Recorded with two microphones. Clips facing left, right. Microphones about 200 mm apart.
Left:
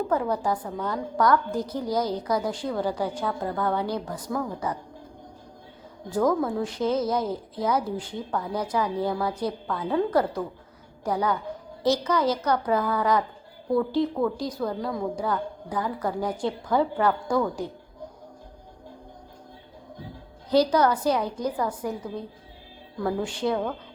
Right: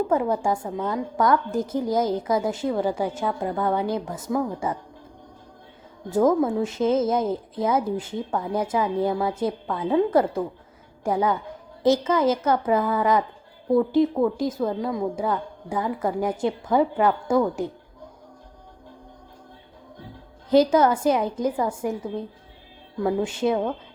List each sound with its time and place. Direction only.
0.1 s a woman's voice: 20° right (ahead or behind)
6.1 s a woman's voice: 20° right (ahead or behind)
20.5 s a woman's voice: 20° right (ahead or behind)